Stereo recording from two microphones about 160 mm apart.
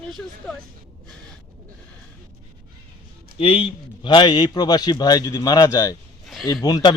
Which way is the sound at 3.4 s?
35° left (ahead or behind).